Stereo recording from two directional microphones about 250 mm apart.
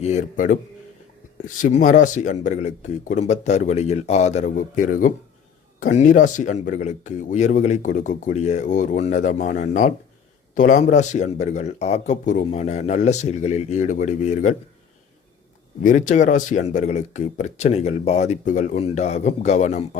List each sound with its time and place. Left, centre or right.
0.0 s speech: left
1.6 s speech: left
15.8 s speech: left